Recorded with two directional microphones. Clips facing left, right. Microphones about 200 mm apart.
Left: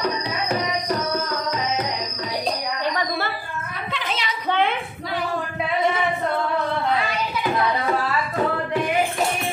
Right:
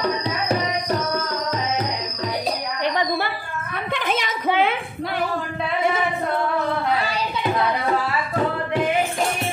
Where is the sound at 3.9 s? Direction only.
50° right (ahead or behind).